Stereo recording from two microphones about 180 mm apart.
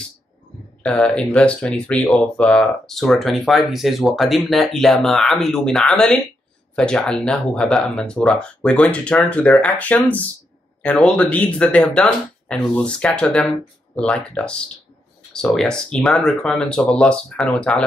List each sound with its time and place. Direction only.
0.8 s speech: 5° left (ahead or behind)